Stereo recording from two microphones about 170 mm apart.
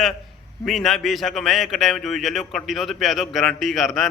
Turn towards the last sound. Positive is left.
turn(degrees=0)  # may be behind; listen again after turning